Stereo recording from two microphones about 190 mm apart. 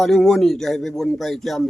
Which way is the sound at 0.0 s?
Centre (ahead or behind).